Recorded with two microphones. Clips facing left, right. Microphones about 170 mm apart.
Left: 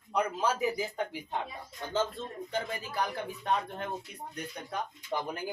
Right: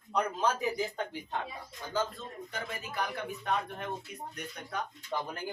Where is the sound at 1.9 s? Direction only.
30° left (ahead or behind).